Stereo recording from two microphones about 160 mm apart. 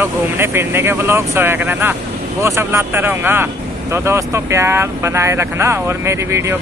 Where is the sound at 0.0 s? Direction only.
15° right (ahead or behind).